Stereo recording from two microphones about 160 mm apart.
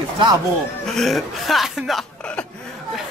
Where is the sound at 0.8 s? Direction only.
Centre (ahead or behind).